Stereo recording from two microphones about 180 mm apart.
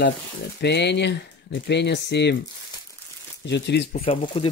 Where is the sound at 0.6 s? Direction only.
70° left (ahead or behind).